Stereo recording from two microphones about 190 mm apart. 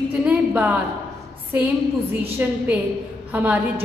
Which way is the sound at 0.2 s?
10° right (ahead or behind).